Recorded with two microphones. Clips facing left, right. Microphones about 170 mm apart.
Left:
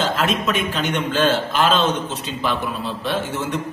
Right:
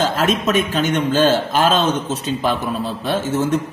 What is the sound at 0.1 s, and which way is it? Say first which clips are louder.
A man's voice: right 3 dB; 45° right (ahead or behind).